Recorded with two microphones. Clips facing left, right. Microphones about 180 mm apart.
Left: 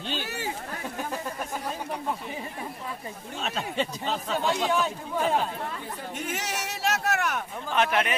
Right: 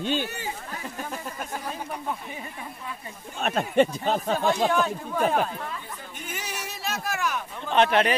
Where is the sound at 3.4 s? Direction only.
55° right (ahead or behind).